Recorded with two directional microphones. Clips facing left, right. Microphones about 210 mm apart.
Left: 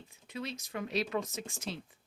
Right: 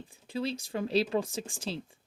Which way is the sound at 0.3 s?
30° right (ahead or behind).